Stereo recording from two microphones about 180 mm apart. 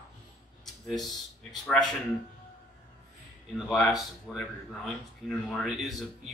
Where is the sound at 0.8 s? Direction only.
Centre (ahead or behind).